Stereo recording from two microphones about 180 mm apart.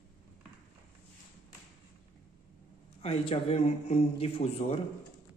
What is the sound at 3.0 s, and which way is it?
A man's voice, 35° left (ahead or behind).